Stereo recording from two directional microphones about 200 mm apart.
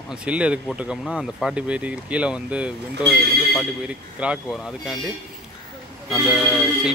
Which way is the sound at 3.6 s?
5° right (ahead or behind).